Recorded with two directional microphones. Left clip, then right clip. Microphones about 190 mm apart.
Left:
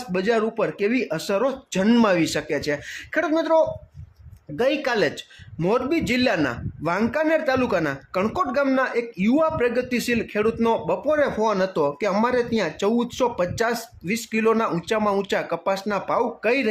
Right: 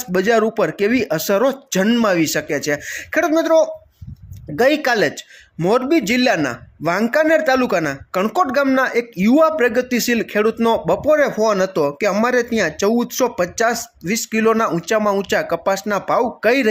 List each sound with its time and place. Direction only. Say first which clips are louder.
0.1 s speech: right 6 dB; 20° right (ahead or behind)
1.8 s speech: right 2 dB; centre (ahead or behind)
2.0 s a man's voice: right 4 dB; 10° right (ahead or behind)